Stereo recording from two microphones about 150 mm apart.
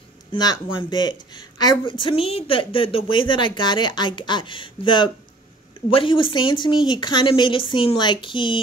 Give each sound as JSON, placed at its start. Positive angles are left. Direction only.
{"t": 0.3, "sound": "speech", "side_deg": 30}